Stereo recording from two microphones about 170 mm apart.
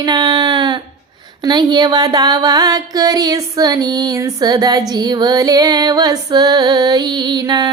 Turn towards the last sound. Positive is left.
turn(degrees=-25)  # may be behind; listen again after turning